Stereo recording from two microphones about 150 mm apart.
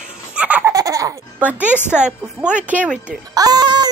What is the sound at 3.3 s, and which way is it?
Speech, 25° right (ahead or behind).